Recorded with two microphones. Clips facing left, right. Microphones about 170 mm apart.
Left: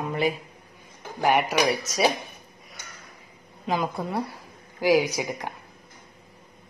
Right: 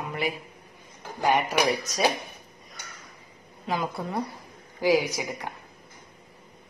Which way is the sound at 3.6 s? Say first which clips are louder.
Left 3 dB; 15° left (ahead or behind).